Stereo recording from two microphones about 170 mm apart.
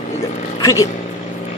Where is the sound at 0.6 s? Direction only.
20° left (ahead or behind).